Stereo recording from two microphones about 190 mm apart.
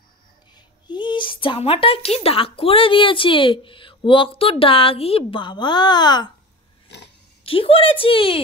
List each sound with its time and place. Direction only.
0.8 s speech: 25° left (ahead or behind)
7.4 s speech: 30° left (ahead or behind)